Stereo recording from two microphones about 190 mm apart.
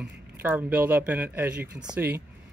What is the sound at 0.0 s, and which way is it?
Speech, 10° right (ahead or behind).